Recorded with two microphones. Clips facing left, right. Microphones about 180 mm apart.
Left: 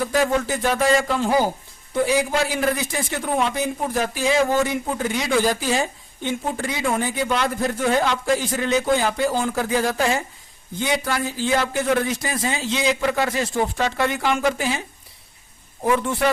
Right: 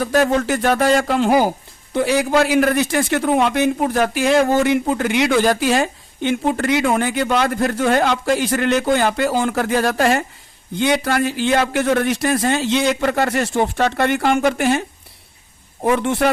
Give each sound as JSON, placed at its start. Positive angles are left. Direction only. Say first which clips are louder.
{"t": 0.1, "sound": "speech", "louder": "right 7 dB", "side_deg": -70}
{"t": 16.0, "sound": "speech", "louder": "right 4 dB", "side_deg": -70}